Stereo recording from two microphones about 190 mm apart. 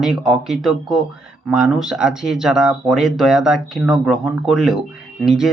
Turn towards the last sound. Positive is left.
turn(degrees=0)  # may be behind; listen again after turning